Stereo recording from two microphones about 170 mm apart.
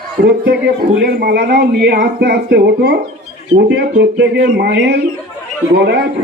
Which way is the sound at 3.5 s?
85° right.